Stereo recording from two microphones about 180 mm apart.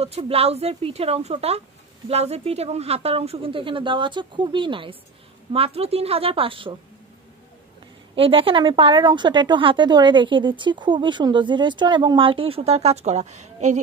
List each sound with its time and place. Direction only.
0.0 s a woman's voice: 35° right (ahead or behind)
8.2 s a woman's voice: 30° right (ahead or behind)